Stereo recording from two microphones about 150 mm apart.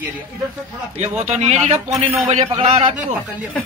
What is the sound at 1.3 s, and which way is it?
Speech, 50° right (ahead or behind).